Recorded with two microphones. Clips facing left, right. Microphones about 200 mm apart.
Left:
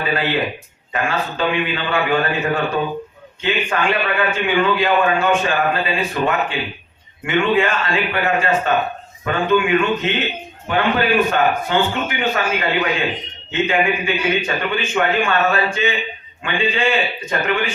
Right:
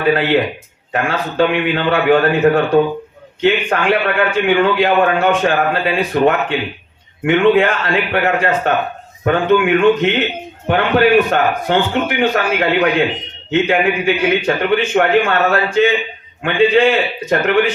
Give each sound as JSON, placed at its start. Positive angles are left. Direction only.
{"t": 0.0, "sound": "a man's voice", "side_deg": -60}